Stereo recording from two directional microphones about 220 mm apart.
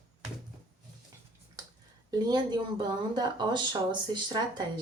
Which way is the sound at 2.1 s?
20° right (ahead or behind).